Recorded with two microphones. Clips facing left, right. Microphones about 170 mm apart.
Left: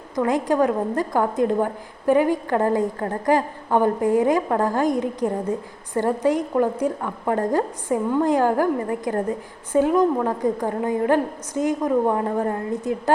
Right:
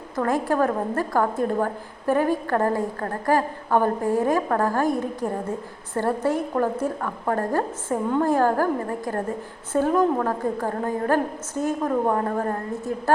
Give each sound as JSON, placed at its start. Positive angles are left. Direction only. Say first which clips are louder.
{"t": 0.2, "sound": "a woman's voice", "louder": "left 2 dB", "side_deg": 15}